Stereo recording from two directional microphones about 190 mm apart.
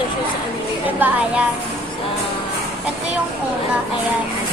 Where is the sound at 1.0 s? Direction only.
5° right (ahead or behind).